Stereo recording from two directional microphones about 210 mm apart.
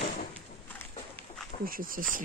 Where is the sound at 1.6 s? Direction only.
40° right (ahead or behind).